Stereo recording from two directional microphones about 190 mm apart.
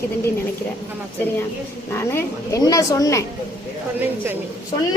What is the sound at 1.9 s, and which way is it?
Speech, 10° left (ahead or behind).